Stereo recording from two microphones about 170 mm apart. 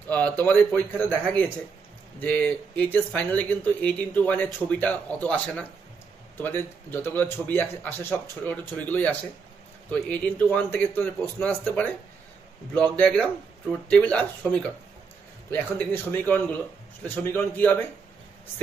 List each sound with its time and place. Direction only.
0.1 s speech: 10° left (ahead or behind)